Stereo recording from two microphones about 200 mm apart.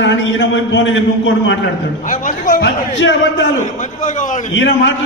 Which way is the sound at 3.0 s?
65° left (ahead or behind).